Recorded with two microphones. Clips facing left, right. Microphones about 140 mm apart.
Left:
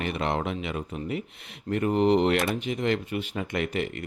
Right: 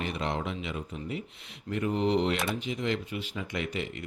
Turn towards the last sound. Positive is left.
turn(degrees=55)  # may be behind; listen again after turning